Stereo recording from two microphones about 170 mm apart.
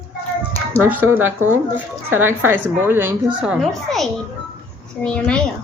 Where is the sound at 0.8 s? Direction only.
10° right (ahead or behind); by 5.4 s 5° left (ahead or behind).